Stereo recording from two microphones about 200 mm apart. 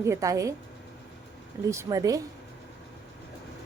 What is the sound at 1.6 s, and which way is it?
Speech, 15° right (ahead or behind).